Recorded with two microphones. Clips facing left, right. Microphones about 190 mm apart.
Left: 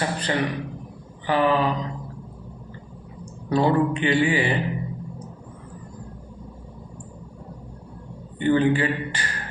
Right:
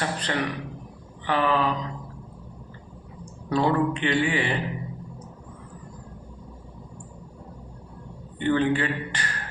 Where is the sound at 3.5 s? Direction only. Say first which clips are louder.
Left 3 dB; 5° left (ahead or behind).